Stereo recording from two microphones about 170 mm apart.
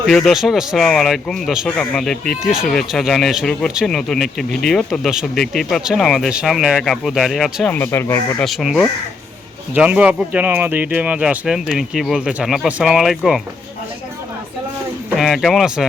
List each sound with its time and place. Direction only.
0.0 s speech: centre (ahead or behind)
8.4 s speech: centre (ahead or behind)
15.1 s speech: centre (ahead or behind)